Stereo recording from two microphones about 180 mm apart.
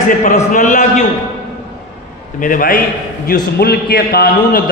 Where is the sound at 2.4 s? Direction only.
50° left (ahead or behind).